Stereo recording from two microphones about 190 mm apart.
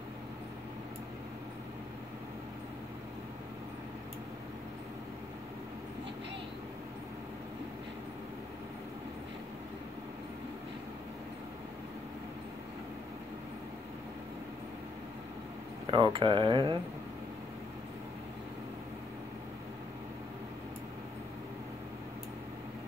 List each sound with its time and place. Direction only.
15.9 s speech: 25° right (ahead or behind)